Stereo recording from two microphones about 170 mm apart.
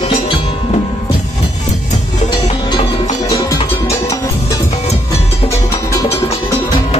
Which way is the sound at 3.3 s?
15° left (ahead or behind).